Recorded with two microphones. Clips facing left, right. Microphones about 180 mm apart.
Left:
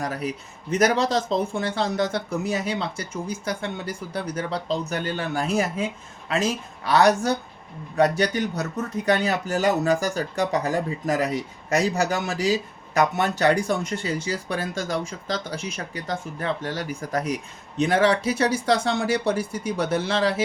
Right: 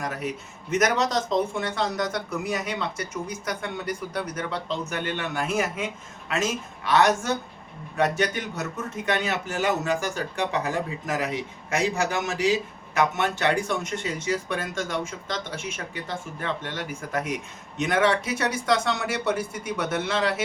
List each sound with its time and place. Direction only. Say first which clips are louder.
0.0 s speech: left 2 dB; 35° left (ahead or behind)